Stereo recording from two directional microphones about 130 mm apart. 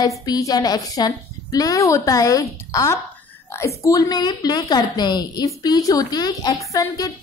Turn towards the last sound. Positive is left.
turn(degrees=25)  # may be behind; listen again after turning